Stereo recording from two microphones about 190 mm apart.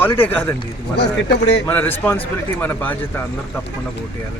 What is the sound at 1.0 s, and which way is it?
Speech, 60° left (ahead or behind).